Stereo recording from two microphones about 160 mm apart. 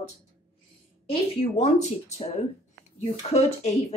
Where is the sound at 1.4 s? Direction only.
45° left (ahead or behind).